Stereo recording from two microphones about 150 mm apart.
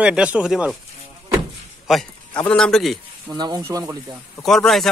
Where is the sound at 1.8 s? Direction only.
Centre (ahead or behind).